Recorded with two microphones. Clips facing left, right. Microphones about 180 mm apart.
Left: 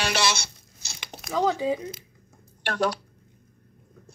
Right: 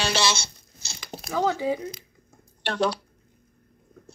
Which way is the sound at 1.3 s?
20° left (ahead or behind).